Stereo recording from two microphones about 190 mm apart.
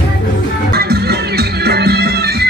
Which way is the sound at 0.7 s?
55° right (ahead or behind).